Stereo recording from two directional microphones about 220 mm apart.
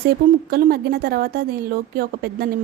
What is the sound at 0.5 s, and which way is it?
A woman's voice, 45° right (ahead or behind).